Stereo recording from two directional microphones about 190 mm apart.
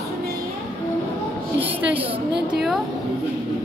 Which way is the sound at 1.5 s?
30° right (ahead or behind).